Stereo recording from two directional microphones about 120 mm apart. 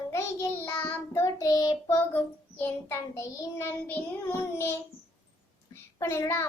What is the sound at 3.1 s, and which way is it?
A child's voice, 30° left (ahead or behind).